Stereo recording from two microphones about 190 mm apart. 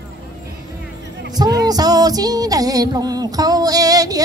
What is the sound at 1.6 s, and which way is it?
Music, 20° right (ahead or behind).